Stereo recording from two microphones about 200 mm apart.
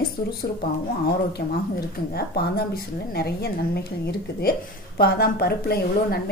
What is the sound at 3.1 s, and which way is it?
A woman's voice, 50° left (ahead or behind).